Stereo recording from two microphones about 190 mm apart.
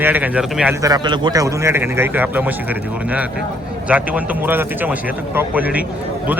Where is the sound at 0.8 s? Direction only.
20° right (ahead or behind).